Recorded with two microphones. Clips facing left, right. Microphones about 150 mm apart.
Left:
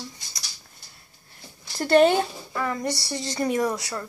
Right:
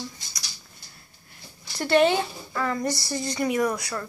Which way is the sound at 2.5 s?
20° left (ahead or behind).